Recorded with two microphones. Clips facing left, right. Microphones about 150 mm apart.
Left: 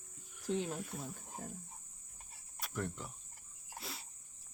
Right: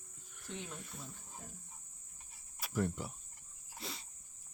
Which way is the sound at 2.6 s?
5° right (ahead or behind).